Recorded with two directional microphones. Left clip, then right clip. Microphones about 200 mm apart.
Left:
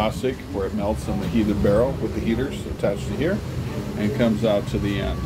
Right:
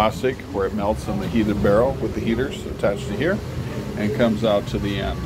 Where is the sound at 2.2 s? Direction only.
5° left (ahead or behind).